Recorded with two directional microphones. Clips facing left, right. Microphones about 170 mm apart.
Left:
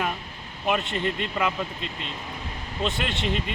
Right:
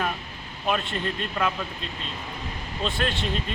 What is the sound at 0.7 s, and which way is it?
Speech, 20° left (ahead or behind).